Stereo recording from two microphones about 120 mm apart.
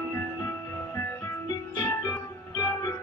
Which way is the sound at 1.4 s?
30° left (ahead or behind).